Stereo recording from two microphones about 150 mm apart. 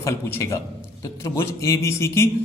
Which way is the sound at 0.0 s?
15° left (ahead or behind).